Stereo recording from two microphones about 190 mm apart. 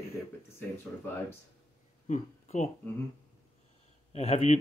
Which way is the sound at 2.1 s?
35° left (ahead or behind).